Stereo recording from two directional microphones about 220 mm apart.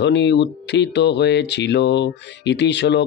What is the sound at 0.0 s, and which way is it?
Speech, 50° left (ahead or behind).